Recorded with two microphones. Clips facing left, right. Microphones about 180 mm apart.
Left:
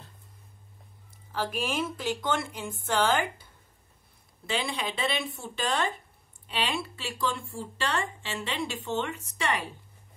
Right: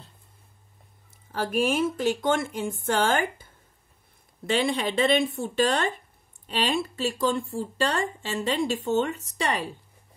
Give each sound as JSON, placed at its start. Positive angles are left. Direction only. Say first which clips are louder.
{"t": 1.3, "sound": "speech", "louder": "right 6 dB", "side_deg": -50}
{"t": 4.5, "sound": "speech", "louder": "right 7 dB", "side_deg": -50}